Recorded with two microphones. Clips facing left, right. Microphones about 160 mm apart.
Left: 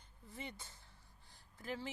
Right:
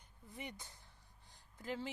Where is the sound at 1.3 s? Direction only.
20° right (ahead or behind).